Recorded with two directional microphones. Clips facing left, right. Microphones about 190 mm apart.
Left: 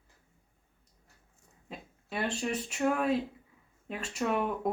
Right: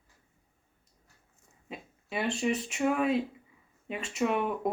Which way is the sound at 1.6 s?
Centre (ahead or behind).